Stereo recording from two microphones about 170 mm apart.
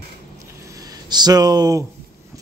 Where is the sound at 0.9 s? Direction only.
25° right (ahead or behind).